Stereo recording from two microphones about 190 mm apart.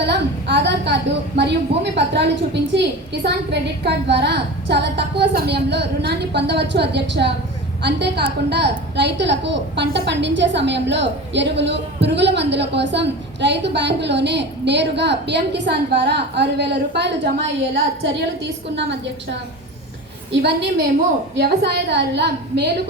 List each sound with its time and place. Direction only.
0.0 s a woman's voice: 65° right (ahead or behind)